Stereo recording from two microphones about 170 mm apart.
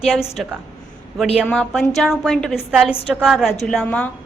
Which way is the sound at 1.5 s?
5° left (ahead or behind).